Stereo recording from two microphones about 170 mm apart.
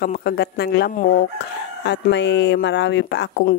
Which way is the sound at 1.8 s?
90° left.